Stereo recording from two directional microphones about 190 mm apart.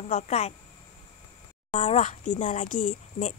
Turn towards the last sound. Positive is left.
turn(degrees=40)  # may be behind; listen again after turning